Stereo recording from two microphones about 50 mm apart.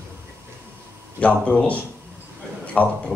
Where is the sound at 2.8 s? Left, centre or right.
Centre.